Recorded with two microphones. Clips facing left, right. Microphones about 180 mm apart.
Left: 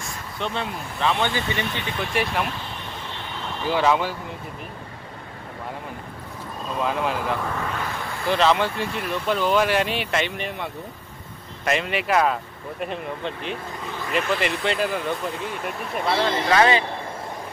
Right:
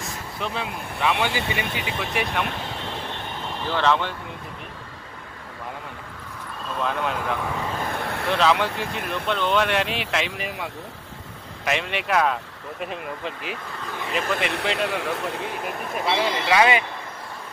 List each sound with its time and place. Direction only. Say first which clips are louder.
0.4 s speech: left 2 dB; 5° right (ahead or behind)
2.0 s speech: left 2 dB; centre (ahead or behind)
3.6 s speech: left 2 dB; 10° left (ahead or behind)
6.7 s speech: left 2 dB; 5° left (ahead or behind)
7.9 s vehicle: right 3 dB; 65° right (ahead or behind)
8.3 s speech: left 1 dB; centre (ahead or behind)
16.2 s speech: left 1 dB; 10° right (ahead or behind)